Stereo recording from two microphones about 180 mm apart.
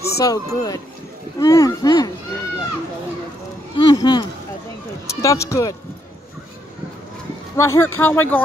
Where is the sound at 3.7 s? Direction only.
25° left (ahead or behind).